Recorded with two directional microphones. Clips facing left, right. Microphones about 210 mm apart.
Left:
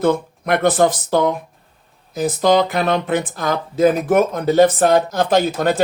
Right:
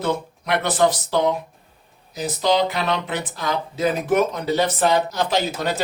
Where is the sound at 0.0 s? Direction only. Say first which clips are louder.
Left 7 dB; 50° left (ahead or behind).